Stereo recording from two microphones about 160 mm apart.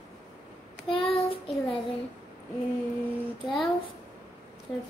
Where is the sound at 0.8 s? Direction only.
35° left (ahead or behind).